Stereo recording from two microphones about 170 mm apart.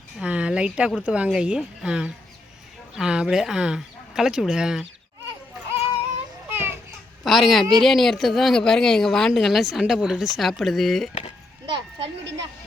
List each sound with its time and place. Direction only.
0.2 s a woman's voice: 5° right (ahead or behind)
6.5 s children playing: 15° right (ahead or behind)
7.3 s a woman's voice: centre (ahead or behind)
11.7 s a sound: 30° right (ahead or behind)